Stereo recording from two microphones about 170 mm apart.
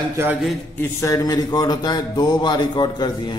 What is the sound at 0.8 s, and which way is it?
Speech, 15° left (ahead or behind).